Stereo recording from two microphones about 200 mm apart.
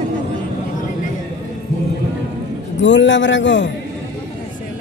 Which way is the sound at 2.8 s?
65° left (ahead or behind).